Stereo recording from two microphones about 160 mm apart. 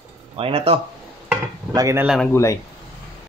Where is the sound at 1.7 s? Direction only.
20° right (ahead or behind).